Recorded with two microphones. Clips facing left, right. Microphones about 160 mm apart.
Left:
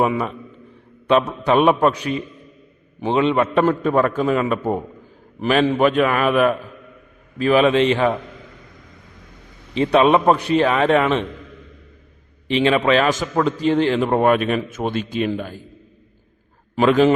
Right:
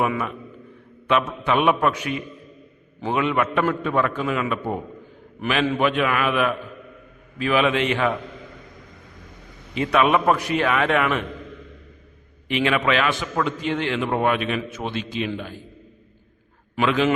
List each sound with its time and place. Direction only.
0.0 s a man's voice: 30° left (ahead or behind)
9.7 s a man's voice: 30° left (ahead or behind)
12.5 s a man's voice: 30° left (ahead or behind)
16.7 s a man's voice: 40° left (ahead or behind)